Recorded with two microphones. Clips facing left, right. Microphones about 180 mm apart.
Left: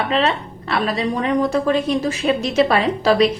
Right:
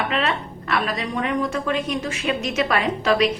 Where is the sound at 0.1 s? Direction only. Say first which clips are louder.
Left 4 dB; 30° left (ahead or behind).